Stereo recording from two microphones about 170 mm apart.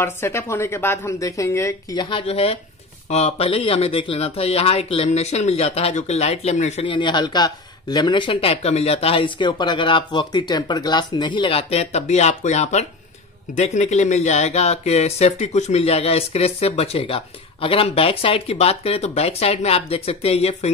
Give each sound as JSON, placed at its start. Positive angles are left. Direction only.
{"t": 0.0, "sound": "a woman's voice", "side_deg": 15}
{"t": 6.9, "sound": "speech", "side_deg": 25}